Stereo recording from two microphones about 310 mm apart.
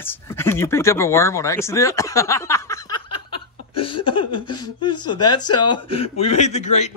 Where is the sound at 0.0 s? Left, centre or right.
Centre.